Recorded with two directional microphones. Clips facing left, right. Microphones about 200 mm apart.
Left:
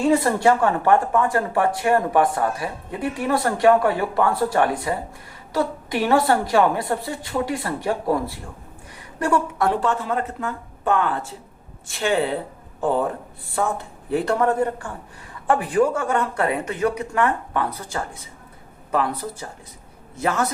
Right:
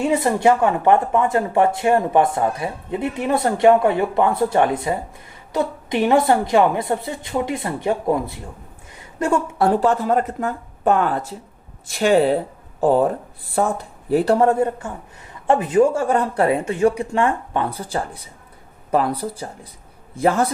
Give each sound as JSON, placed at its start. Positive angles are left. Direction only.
{"t": 0.0, "sound": "speech", "side_deg": -20}